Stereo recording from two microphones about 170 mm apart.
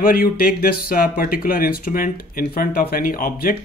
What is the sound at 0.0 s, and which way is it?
Speech, 60° left (ahead or behind).